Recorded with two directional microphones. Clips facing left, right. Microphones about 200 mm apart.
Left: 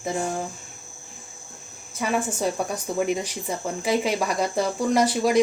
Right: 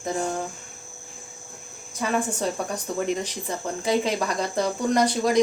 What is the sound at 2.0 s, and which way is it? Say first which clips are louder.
Speech: even; 10° left (ahead or behind).